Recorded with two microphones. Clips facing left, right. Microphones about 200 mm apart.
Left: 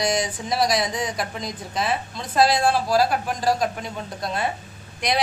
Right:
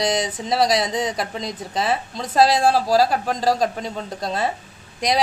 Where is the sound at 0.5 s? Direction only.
25° right (ahead or behind).